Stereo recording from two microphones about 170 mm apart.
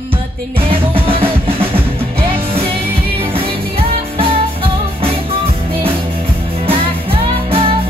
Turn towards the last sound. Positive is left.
turn(degrees=-35)  # may be behind; listen again after turning